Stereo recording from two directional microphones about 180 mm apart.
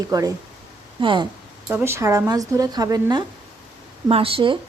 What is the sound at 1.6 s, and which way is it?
Speech, 15° right (ahead or behind).